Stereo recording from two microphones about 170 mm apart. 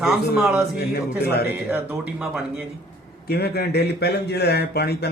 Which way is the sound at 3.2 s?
70° left (ahead or behind).